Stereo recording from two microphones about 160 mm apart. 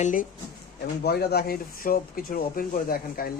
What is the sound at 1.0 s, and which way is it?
A man's voice, 80° left.